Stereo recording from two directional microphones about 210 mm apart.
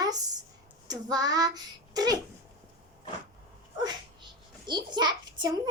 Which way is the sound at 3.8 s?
20° right (ahead or behind).